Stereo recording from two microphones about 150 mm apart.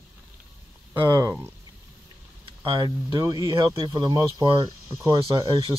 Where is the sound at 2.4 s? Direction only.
35° right (ahead or behind).